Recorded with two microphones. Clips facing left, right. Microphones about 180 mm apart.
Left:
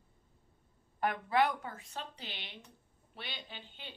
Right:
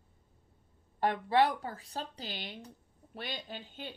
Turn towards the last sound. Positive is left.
turn(degrees=-45)  # may be behind; listen again after turning